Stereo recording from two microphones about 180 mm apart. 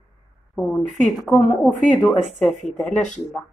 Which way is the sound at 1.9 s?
Centre (ahead or behind).